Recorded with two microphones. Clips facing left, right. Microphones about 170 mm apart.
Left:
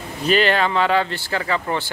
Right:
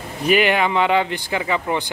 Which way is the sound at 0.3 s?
15° right (ahead or behind).